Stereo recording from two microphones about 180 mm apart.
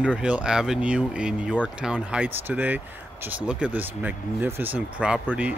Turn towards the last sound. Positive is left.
turn(degrees=-10)  # may be behind; listen again after turning